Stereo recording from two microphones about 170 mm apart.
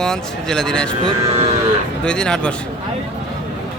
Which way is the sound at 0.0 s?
5° left (ahead or behind).